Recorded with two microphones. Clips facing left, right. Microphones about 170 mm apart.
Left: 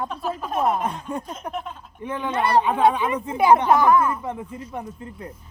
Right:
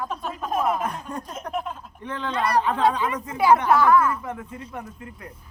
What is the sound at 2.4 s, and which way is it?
Speech, 25° left (ahead or behind).